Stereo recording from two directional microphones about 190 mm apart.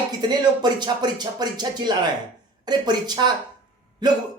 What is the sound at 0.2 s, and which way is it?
Speech, 20° right (ahead or behind).